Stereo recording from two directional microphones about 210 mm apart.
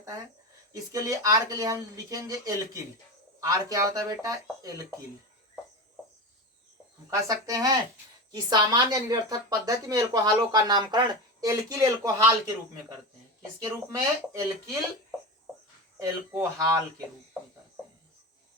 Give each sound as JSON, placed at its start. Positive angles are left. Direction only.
{"t": 0.7, "sound": "speech", "side_deg": -15}
{"t": 7.1, "sound": "speech", "side_deg": -15}
{"t": 13.6, "sound": "speech", "side_deg": -15}
{"t": 16.0, "sound": "speech", "side_deg": -15}